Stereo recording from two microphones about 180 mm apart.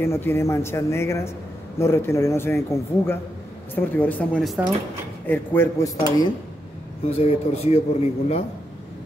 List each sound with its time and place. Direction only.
0.0 s a man's voice: 15° left (ahead or behind)
7.1 s a man's voice: 35° left (ahead or behind)